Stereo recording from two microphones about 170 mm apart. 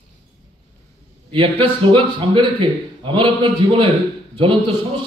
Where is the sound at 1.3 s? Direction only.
30° right (ahead or behind).